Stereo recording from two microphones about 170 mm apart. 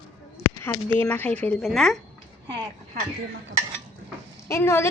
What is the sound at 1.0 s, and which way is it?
Speech, 10° left (ahead or behind).